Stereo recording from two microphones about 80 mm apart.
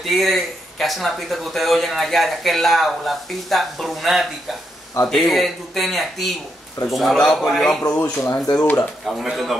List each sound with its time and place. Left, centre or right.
0.0 s speech: centre
8.0 s speech: left
8.5 s speech: left
9.0 s speech: centre